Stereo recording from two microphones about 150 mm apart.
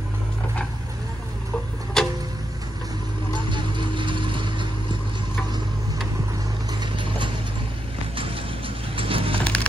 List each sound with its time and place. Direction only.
2.0 s vehicle: 5° left (ahead or behind)
3.3 s vehicle: 30° right (ahead or behind)
6.8 s mechanisms: 35° right (ahead or behind)
8.2 s vehicle: 35° right (ahead or behind)
9.4 s a sound: 10° left (ahead or behind)